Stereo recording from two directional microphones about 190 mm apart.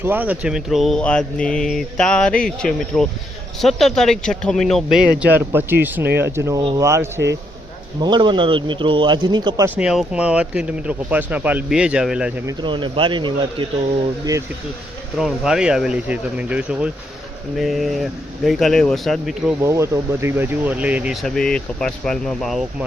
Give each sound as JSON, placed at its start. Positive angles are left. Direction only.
{"t": 0.0, "sound": "a man's voice", "side_deg": -10}
{"t": 9.6, "sound": "speech", "side_deg": -5}
{"t": 12.5, "sound": "a man's voice", "side_deg": -25}
{"t": 15.2, "sound": "speech", "side_deg": 0}
{"t": 19.6, "sound": "speech", "side_deg": -15}